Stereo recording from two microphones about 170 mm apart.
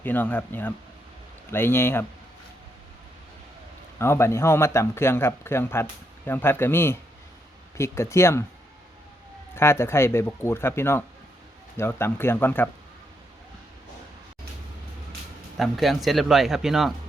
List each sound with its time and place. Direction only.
0.0 s speech: 10° left (ahead or behind)
3.9 s speech: 15° left (ahead or behind)
9.6 s speech: 15° left (ahead or behind)
15.5 s speech: centre (ahead or behind)